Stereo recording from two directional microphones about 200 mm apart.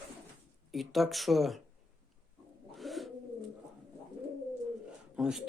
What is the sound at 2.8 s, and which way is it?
Bird, centre (ahead or behind).